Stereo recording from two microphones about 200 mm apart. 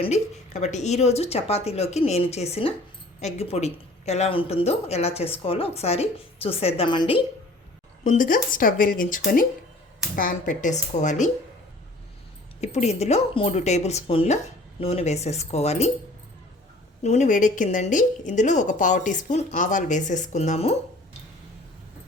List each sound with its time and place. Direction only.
0.0 s speech: 35° left (ahead or behind)
8.0 s speech: 40° left (ahead or behind)
12.5 s speech: 35° left (ahead or behind)
17.0 s speech: 35° left (ahead or behind)